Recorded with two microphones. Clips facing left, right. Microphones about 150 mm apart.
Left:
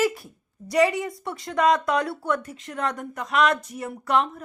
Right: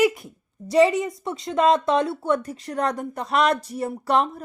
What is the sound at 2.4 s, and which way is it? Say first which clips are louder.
Speech: right 4 dB; 35° right (ahead or behind).